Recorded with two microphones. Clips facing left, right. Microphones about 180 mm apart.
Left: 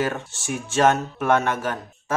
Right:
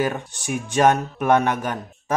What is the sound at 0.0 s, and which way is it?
Speech, 15° right (ahead or behind).